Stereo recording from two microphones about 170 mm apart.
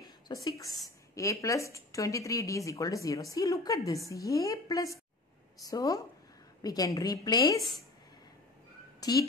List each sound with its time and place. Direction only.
0.0 s speech: 20° left (ahead or behind)
9.0 s speech: 20° left (ahead or behind)